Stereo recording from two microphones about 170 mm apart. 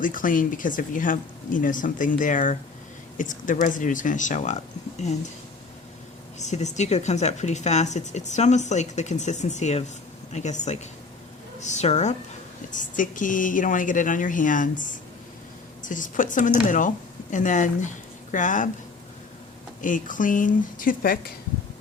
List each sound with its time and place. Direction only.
0.0 s speech: 50° left (ahead or behind)
6.4 s speech: 45° left (ahead or behind)
19.8 s speech: 50° left (ahead or behind)